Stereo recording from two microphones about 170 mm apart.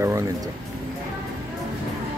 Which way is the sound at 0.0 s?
20° right (ahead or behind).